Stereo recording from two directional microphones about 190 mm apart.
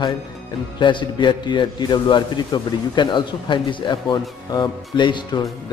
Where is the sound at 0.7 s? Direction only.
25° left (ahead or behind).